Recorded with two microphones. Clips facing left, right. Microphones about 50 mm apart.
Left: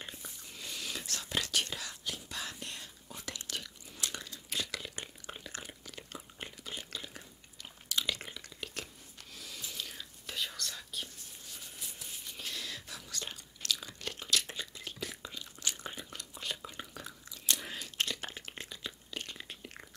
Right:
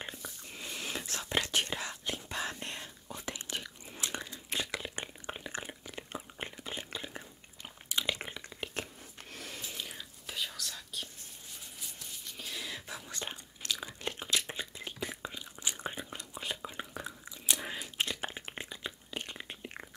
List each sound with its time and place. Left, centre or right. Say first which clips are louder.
0.2 s whispering: right 3 dB; right
3.2 s biting: right 2 dB; right
7.9 s drip: right 1 dB; right
9.3 s a sound: right 2 dB; right
9.8 s whispering: right 1 dB; centre
10.2 s whispering: even; centre
12.0 s a sound: even; centre
12.4 s whispering: right 1 dB; centre
12.8 s biting: right 2 dB; right
18.0 s a sound: right 2 dB; centre